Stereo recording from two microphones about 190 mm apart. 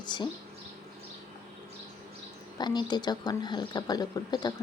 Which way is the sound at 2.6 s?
20° left (ahead or behind).